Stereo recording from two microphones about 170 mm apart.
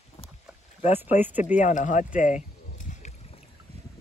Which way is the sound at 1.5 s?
45° left (ahead or behind).